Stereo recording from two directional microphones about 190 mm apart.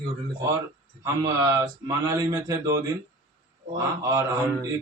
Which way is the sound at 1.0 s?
15° right (ahead or behind).